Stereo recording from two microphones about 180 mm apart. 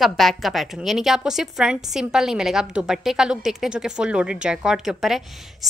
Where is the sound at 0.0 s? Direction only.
Centre (ahead or behind).